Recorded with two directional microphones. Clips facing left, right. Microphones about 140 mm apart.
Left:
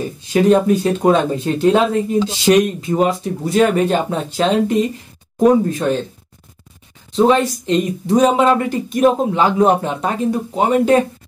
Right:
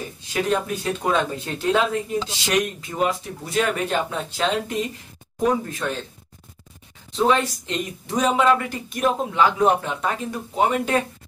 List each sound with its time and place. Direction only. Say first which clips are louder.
0.3 s speech: left 11 dB; 30° left (ahead or behind)
7.2 s speech: left 6 dB; 30° left (ahead or behind)